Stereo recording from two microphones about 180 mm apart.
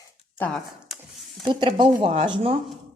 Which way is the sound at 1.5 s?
25° right (ahead or behind).